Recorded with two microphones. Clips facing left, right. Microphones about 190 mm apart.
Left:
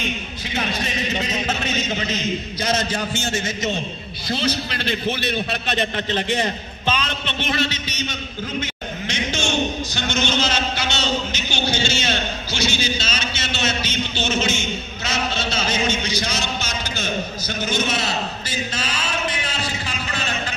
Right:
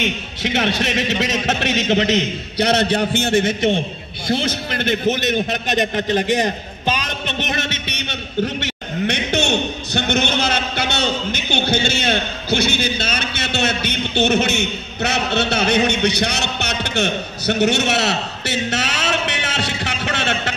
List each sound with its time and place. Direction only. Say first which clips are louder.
0.0 s a man's voice: right 5 dB; 80° right; by 5.3 s 45° right (ahead or behind)
5.3 s a man's voice: right 4 dB; 15° right (ahead or behind)
6.1 s a man's voice: right 4 dB; 45° right (ahead or behind)
7.5 s a sound: left 1 dB; 55° right (ahead or behind); by 20.5 s 75° right (ahead or behind)